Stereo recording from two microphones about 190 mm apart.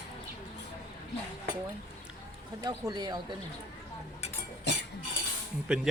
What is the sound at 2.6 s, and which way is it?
Speech, 20° right (ahead or behind).